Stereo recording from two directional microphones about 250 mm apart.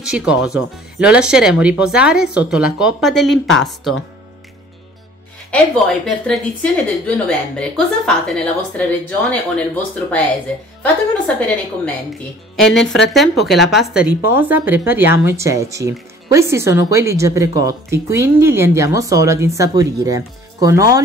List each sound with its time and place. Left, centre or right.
0.0 s a woman's voice: centre
5.5 s a woman's voice: centre